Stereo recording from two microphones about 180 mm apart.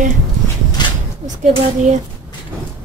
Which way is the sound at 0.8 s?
25° left (ahead or behind).